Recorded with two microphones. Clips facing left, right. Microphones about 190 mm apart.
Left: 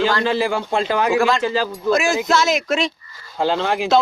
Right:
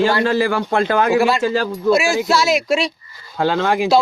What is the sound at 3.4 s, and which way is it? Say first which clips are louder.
Speech: right 2 dB; 55° right (ahead or behind).